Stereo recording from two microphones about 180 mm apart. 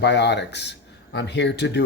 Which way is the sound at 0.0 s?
70° left (ahead or behind).